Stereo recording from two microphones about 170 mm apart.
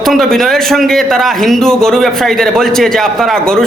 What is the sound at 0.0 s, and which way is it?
A man's voice, centre (ahead or behind).